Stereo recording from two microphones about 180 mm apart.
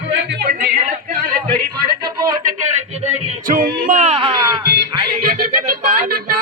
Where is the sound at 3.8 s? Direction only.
45° right (ahead or behind); by 4.6 s 25° right (ahead or behind).